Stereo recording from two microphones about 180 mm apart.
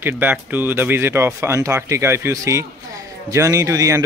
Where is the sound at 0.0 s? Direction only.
10° right (ahead or behind).